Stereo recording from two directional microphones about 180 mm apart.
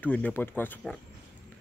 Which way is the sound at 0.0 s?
10° left (ahead or behind).